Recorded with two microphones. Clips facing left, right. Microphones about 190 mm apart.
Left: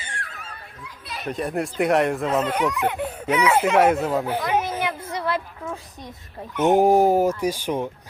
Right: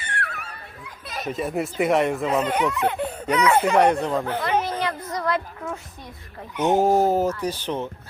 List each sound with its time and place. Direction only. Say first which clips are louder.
0.0 s dog: right 5 dB; 65° right (ahead or behind)
0.9 s chatter: right 2 dB; 45° right (ahead or behind)
1.3 s speech: even; centre (ahead or behind)
6.7 s speech: left 2 dB; 15° left (ahead or behind)